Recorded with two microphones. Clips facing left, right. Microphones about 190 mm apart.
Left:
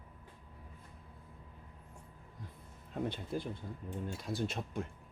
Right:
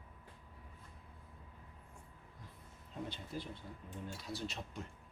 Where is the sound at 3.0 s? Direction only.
55° left (ahead or behind).